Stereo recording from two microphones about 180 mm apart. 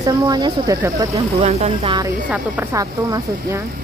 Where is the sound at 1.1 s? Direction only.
35° right (ahead or behind).